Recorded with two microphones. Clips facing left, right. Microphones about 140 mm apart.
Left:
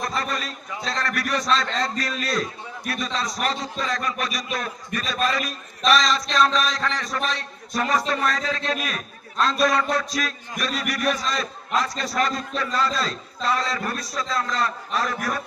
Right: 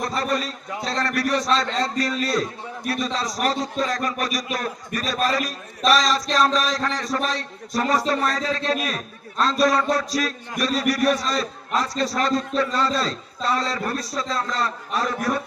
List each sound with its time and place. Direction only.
0.1 s a man's voice: 30° right (ahead or behind)